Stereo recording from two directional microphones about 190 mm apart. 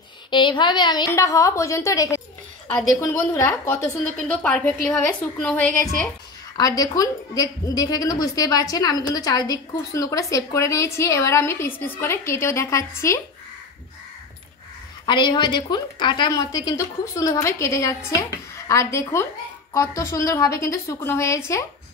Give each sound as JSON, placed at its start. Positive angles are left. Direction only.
{"t": 0.3, "sound": "a woman's voice", "side_deg": 25}
{"t": 6.5, "sound": "a woman's voice", "side_deg": 20}
{"t": 15.0, "sound": "a woman's voice", "side_deg": 25}